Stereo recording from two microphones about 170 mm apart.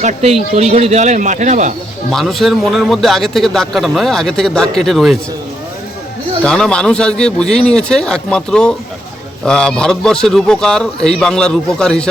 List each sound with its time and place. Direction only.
0.0 s speech: 40° right (ahead or behind)
2.0 s a man's voice: centre (ahead or behind)
6.4 s a man's voice: 5° left (ahead or behind)